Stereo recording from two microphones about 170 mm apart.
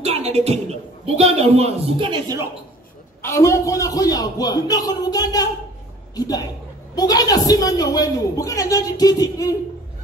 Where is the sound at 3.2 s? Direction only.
15° left (ahead or behind).